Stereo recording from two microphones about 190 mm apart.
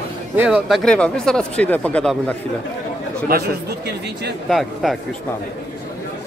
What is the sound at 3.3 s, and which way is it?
Speech, 55° right (ahead or behind).